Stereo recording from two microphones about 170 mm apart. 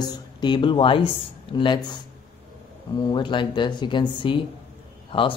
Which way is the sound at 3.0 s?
30° left (ahead or behind).